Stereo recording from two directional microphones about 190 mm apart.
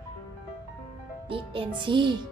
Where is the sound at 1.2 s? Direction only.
30° right (ahead or behind).